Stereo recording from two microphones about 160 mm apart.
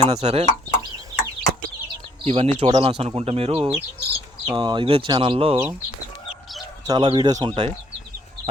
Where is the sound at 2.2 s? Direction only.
40° right (ahead or behind).